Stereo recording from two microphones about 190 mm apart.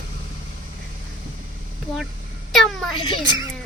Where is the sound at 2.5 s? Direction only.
Centre (ahead or behind).